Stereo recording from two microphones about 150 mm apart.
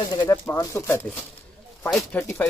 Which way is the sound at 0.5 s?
15° left (ahead or behind).